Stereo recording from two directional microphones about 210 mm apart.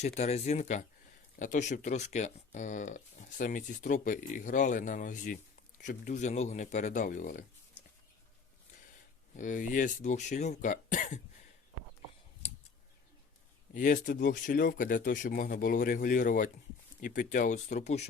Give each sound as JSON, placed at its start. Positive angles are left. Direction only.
{"t": 0.0, "sound": "speech", "side_deg": 30}
{"t": 9.3, "sound": "speech", "side_deg": 40}
{"t": 13.7, "sound": "speech", "side_deg": 40}